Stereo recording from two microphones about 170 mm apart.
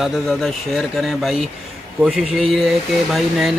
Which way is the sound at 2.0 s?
5° right (ahead or behind).